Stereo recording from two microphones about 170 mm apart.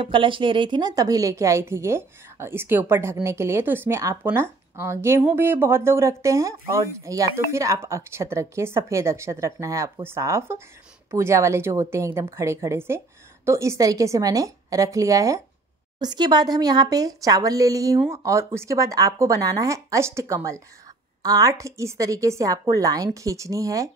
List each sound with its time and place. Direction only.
0.0 s speech: 30° right (ahead or behind)